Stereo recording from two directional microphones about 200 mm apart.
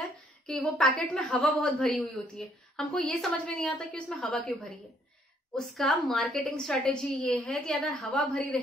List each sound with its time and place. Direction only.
0.0 s a woman's voice: centre (ahead or behind)